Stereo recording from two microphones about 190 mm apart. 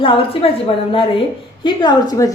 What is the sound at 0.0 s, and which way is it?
A woman's voice, 30° left (ahead or behind).